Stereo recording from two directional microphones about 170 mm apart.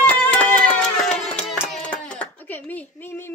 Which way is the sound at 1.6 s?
5° left (ahead or behind).